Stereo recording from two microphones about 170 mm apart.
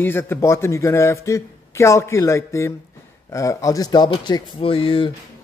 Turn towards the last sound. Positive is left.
turn(degrees=30)  # may be behind; listen again after turning